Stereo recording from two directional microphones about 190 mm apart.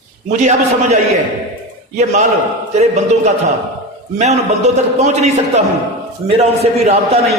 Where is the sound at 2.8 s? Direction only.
35° right (ahead or behind).